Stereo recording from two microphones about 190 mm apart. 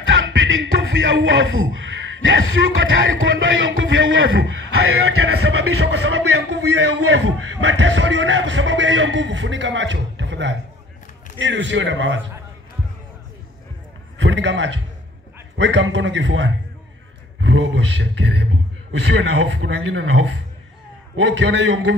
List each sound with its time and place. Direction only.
0.0 s music: 90° right
2.2 s speech: 90° right; by 12.2 s 75° right (ahead or behind)
14.1 s a man's voice: 70° right (ahead or behind)